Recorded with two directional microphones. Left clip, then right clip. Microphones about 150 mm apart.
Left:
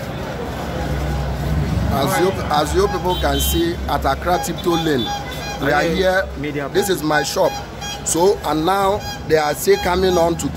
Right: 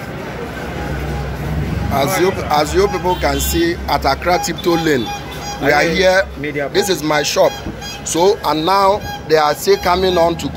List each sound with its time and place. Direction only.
2.2 s speech: 5° right (ahead or behind)
6.4 s speech: 15° left (ahead or behind)
6.7 s speech: 5° left (ahead or behind); by 10.5 s 25° left (ahead or behind)